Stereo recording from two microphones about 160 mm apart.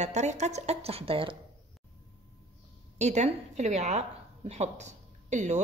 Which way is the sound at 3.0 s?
45° right (ahead or behind).